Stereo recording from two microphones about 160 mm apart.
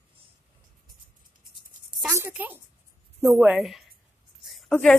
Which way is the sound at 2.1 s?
10° right (ahead or behind).